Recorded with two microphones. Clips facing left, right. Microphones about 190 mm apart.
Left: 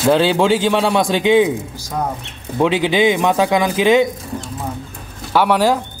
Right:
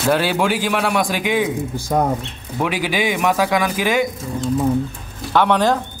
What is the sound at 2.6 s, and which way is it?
A man's voice, 25° left (ahead or behind).